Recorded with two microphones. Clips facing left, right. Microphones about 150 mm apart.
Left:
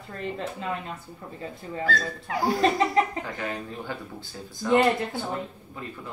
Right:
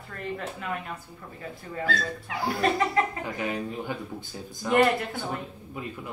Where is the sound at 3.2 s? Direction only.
15° right (ahead or behind).